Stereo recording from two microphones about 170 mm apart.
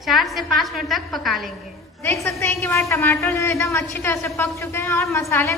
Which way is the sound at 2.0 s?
15° left (ahead or behind).